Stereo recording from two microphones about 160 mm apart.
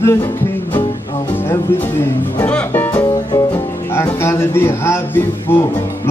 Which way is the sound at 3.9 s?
15° left (ahead or behind).